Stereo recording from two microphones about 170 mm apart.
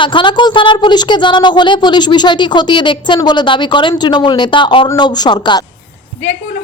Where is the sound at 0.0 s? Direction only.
30° left (ahead or behind).